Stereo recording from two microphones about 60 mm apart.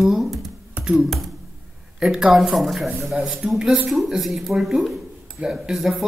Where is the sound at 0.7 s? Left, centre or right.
Centre.